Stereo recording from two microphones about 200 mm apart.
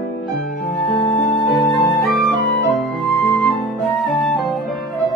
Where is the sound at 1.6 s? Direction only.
Centre (ahead or behind).